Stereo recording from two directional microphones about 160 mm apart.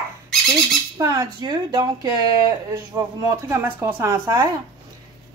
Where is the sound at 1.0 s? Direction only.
25° right (ahead or behind).